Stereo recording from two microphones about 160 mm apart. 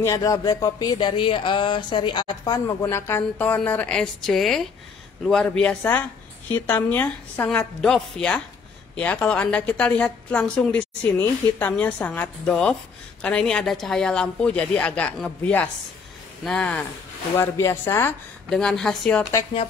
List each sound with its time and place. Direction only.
0.0 s a woman's voice: 20° left (ahead or behind)
17.4 s a woman's voice: 15° left (ahead or behind)
18.5 s a woman's voice: 5° left (ahead or behind)